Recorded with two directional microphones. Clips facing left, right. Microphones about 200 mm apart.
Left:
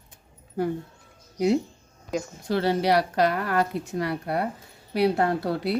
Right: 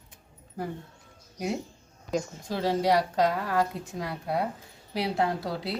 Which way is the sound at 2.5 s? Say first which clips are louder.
Left 3 dB; 70° left (ahead or behind).